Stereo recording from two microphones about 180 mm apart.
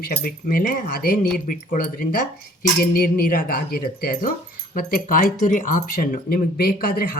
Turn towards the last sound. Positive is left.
turn(degrees=55)  # may be behind; listen again after turning